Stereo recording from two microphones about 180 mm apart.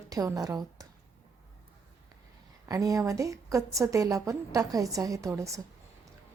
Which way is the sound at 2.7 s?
20° right (ahead or behind).